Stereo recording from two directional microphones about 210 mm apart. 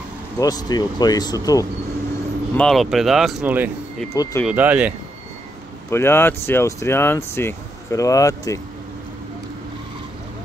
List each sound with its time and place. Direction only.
0.4 s speech: 20° left (ahead or behind)
2.5 s speech: centre (ahead or behind)
4.1 s speech: 15° left (ahead or behind)
4.5 s speech: 5° right (ahead or behind)
5.9 s speech: 10° left (ahead or behind)